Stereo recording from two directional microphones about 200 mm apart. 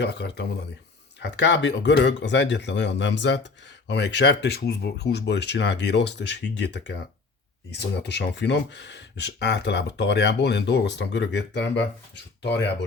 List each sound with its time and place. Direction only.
0.0 s speech: 55° left (ahead or behind)